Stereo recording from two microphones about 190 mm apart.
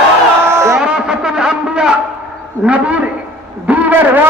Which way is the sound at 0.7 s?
5° right (ahead or behind).